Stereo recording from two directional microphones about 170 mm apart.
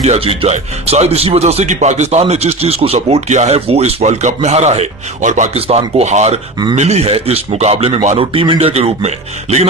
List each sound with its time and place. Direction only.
0.0 s speech: 35° right (ahead or behind)